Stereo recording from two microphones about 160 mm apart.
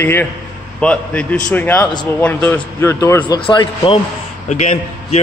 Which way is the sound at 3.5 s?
35° left (ahead or behind).